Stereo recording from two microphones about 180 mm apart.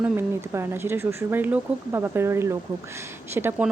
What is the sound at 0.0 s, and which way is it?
A woman's voice, 15° right (ahead or behind).